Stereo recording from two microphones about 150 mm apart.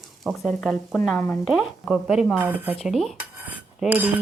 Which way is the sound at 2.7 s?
Centre (ahead or behind).